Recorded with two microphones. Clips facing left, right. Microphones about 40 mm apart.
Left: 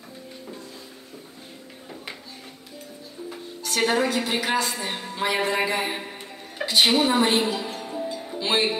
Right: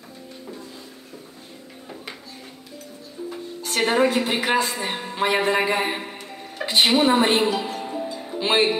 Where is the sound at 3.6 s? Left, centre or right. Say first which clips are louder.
Right 3 dB; right.